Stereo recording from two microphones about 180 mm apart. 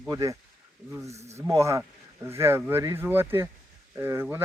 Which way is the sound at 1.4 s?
15° right (ahead or behind).